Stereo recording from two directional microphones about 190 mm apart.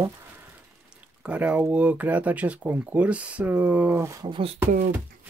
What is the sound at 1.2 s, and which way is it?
Speech, 5° right (ahead or behind).